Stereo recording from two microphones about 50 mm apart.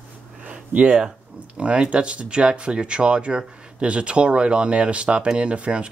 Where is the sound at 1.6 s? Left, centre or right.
Right.